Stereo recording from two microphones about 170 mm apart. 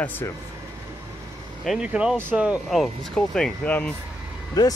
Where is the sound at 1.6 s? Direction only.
5° right (ahead or behind).